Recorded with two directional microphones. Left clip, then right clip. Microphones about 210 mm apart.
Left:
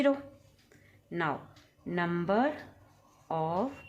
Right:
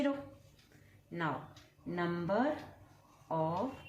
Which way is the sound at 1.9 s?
40° left (ahead or behind).